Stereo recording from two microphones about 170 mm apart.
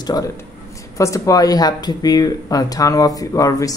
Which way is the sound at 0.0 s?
20° left (ahead or behind).